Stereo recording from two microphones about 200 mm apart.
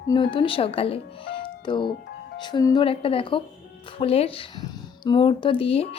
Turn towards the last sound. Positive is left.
turn(degrees=30)  # may be behind; listen again after turning